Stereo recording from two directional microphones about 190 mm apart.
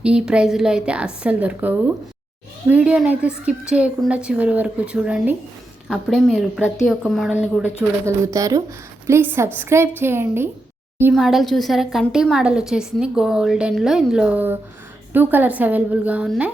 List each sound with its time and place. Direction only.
0.0 s a woman's voice: 5° right (ahead or behind)
11.1 s a woman's voice: centre (ahead or behind)